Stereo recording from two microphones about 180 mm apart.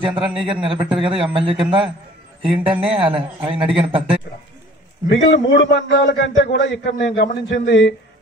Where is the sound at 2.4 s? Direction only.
10° right (ahead or behind).